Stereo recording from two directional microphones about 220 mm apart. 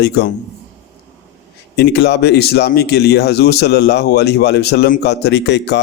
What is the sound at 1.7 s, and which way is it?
A man's voice, 50° left (ahead or behind).